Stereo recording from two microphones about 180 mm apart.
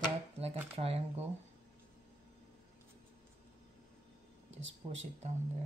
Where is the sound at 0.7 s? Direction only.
35° right (ahead or behind).